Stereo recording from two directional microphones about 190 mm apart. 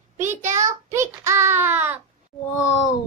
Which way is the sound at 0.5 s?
15° right (ahead or behind).